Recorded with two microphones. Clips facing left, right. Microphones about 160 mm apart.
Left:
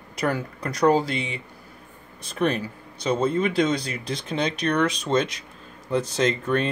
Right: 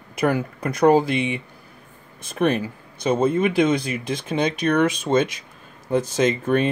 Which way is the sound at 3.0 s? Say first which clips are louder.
Right 3 dB; 50° right (ahead or behind).